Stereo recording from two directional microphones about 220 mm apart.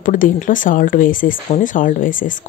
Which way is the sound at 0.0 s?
40° left (ahead or behind).